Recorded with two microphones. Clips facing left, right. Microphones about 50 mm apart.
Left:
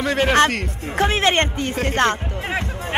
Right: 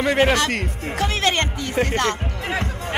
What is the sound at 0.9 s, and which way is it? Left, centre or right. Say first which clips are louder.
Speech: left 4 dB; left.